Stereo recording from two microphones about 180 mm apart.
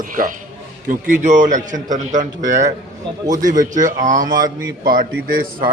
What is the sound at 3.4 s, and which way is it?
A man's voice, 45° right (ahead or behind).